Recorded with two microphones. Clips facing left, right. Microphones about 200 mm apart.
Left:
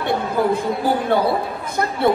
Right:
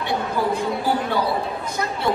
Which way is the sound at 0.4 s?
55° left (ahead or behind).